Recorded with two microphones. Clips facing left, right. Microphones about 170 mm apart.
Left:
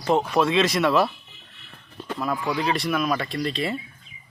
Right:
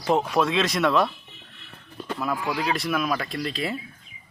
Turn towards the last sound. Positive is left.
turn(degrees=0)  # may be behind; listen again after turning